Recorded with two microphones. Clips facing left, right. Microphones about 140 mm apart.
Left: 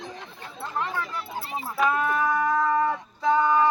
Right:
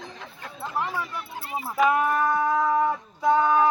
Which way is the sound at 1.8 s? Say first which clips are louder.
Right 2 dB; 10° right (ahead or behind).